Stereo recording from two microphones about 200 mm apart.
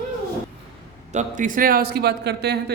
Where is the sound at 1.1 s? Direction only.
40° right (ahead or behind); by 2.7 s 55° right (ahead or behind).